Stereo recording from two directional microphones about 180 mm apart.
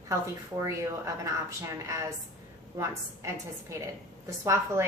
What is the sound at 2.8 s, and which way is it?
Speech, 15° right (ahead or behind).